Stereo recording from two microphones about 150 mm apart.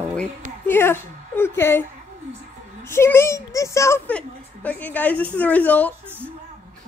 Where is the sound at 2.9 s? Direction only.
15° left (ahead or behind).